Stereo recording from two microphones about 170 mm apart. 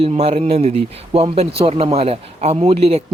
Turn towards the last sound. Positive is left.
turn(degrees=-35)  # may be behind; listen again after turning